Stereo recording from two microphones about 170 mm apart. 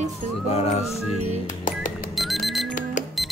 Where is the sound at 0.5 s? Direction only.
40° left (ahead or behind).